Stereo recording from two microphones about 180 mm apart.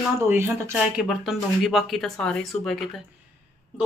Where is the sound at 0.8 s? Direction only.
5° right (ahead or behind).